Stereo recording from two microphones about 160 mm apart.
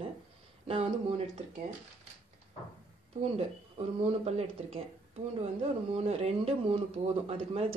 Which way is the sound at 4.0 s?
40° right (ahead or behind).